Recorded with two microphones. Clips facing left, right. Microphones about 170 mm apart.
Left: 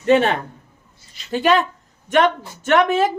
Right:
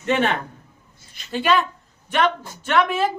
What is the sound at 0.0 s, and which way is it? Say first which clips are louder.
A man's voice: left 5 dB; 35° left (ahead or behind).